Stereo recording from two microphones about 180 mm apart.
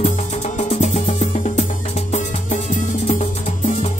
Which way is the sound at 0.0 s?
40° left (ahead or behind).